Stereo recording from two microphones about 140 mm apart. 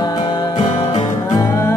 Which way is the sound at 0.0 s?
30° left (ahead or behind).